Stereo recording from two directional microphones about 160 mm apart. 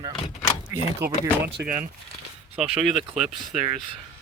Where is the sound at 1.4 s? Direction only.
70° right (ahead or behind).